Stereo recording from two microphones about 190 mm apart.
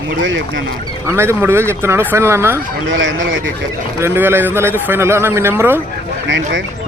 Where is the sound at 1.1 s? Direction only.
15° right (ahead or behind).